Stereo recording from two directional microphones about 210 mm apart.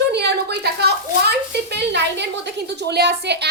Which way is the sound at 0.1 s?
50° right (ahead or behind).